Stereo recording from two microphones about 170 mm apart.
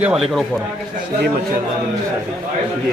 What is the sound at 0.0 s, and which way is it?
Speech, centre (ahead or behind).